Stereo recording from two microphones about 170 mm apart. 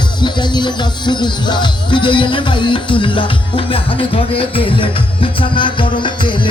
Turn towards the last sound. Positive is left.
turn(degrees=30)  # may be behind; listen again after turning